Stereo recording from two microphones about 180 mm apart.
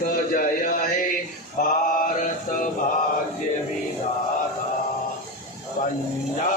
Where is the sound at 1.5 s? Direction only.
50° left (ahead or behind).